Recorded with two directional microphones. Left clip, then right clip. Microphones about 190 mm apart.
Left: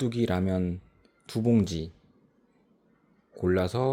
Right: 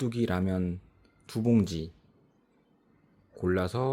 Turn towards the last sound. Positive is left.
turn(degrees=10)  # may be behind; listen again after turning